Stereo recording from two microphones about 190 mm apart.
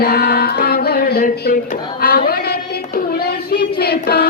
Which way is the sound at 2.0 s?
50° left (ahead or behind).